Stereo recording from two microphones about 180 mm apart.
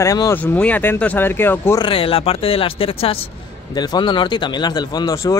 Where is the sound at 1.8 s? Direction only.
30° left (ahead or behind).